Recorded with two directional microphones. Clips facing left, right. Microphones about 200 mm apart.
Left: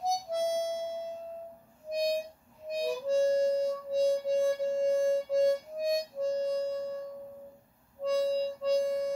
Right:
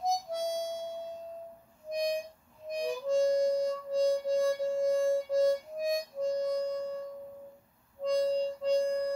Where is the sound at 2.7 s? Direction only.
5° left (ahead or behind).